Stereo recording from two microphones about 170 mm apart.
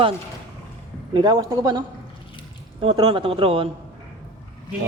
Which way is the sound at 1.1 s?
25° right (ahead or behind).